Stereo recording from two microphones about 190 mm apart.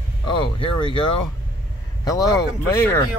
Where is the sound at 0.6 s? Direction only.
25° left (ahead or behind).